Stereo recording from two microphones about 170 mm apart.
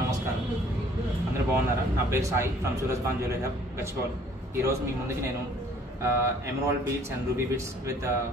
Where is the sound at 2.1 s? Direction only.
15° right (ahead or behind).